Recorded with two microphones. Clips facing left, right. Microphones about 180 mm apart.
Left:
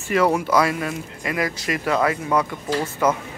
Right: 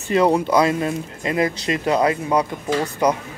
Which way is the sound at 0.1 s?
25° right (ahead or behind).